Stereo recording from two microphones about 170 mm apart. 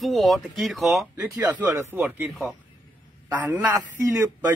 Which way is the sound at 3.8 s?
15° right (ahead or behind).